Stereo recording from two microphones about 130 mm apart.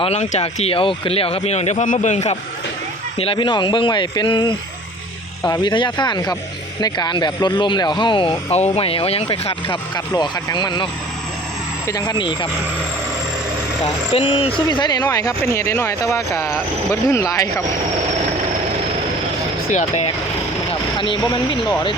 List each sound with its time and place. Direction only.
0.0 s speech: 55° left (ahead or behind)
3.2 s speech: 40° left (ahead or behind)
10.2 s speech: 35° left (ahead or behind)
11.9 s speech: 30° left (ahead or behind)
14.1 s speech: 50° left (ahead or behind)
14.7 s speech: 35° left (ahead or behind)
21.0 s speech: 40° left (ahead or behind)